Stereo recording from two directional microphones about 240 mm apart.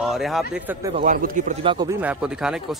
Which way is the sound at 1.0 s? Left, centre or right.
Right.